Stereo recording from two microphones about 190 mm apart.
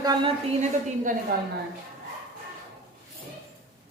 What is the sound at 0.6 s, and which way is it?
Speech, 45° right (ahead or behind).